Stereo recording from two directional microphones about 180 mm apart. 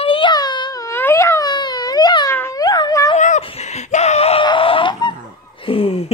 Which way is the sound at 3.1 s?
40° left (ahead or behind).